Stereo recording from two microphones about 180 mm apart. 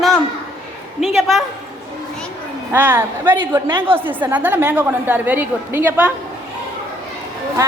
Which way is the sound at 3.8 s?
10° right (ahead or behind).